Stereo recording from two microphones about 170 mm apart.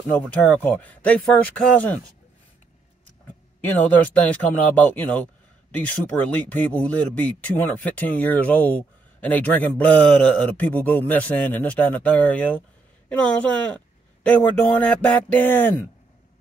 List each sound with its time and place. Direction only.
0.4 s speech: 10° left (ahead or behind)
3.6 s speech: 10° left (ahead or behind)